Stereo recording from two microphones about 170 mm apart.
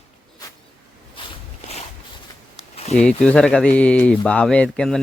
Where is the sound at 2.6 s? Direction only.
40° left (ahead or behind).